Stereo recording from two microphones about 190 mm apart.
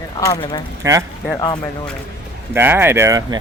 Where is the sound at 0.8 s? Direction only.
15° right (ahead or behind).